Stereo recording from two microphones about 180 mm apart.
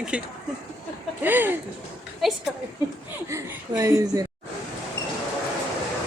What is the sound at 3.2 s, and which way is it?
Speech, 15° right (ahead or behind).